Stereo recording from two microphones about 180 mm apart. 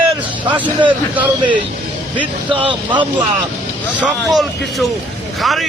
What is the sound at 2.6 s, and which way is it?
Speech, 25° right (ahead or behind).